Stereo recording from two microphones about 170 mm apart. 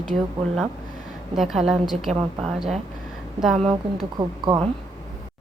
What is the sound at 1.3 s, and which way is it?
A woman's voice, centre (ahead or behind).